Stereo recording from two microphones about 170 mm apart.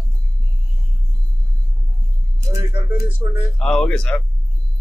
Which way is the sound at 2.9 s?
10° right (ahead or behind).